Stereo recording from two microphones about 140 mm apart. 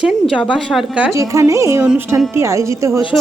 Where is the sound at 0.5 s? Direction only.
Centre (ahead or behind).